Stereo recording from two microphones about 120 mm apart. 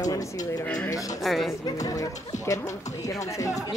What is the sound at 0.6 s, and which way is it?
Speech, 10° left (ahead or behind).